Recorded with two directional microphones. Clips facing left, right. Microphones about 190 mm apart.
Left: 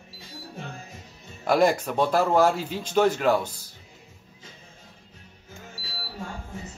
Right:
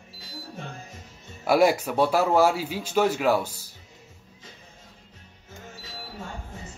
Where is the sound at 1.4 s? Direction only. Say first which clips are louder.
Right 1 dB; 10° right (ahead or behind).